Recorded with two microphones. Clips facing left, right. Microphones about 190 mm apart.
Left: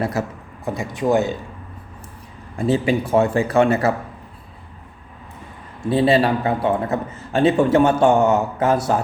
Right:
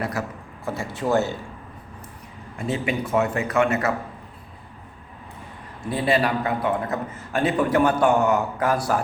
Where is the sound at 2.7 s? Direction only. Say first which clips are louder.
Left 6 dB; 30° left (ahead or behind).